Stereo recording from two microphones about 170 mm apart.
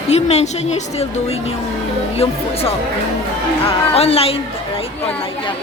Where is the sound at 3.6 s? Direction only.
35° left (ahead or behind).